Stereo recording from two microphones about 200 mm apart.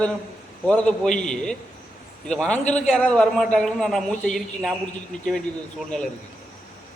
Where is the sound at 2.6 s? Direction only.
35° left (ahead or behind).